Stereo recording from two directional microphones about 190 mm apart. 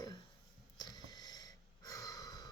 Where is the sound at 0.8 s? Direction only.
20° left (ahead or behind).